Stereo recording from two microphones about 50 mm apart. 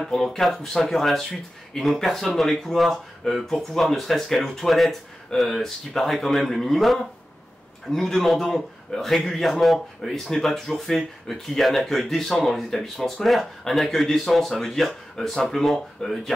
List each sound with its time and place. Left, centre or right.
0.0 s speech: centre